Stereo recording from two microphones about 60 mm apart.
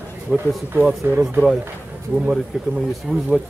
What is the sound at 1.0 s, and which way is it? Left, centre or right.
Speech, right.